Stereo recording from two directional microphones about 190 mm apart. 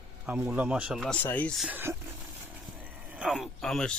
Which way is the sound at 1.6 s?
10° right (ahead or behind).